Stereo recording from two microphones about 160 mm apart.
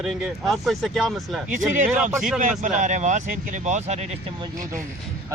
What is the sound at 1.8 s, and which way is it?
Speech, 10° right (ahead or behind).